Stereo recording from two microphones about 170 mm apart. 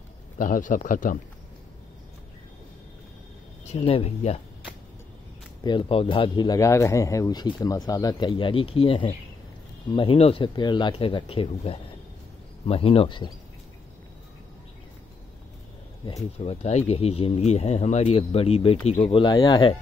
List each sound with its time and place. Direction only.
0.4 s a man's voice: 50° left (ahead or behind)
3.7 s speech: 35° left (ahead or behind)
5.6 s speech: 25° left (ahead or behind)
16.3 s speech: 40° left (ahead or behind)